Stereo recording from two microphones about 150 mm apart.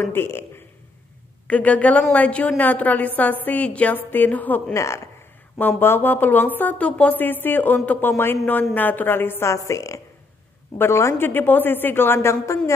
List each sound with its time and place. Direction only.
0.0 s a woman's voice: 15° left (ahead or behind)